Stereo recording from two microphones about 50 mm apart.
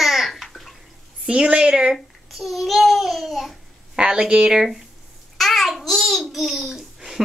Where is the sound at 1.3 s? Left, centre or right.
Right.